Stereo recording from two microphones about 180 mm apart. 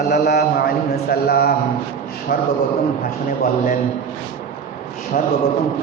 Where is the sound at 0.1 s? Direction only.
65° left (ahead or behind).